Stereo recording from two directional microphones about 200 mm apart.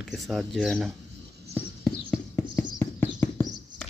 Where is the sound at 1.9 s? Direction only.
5° left (ahead or behind).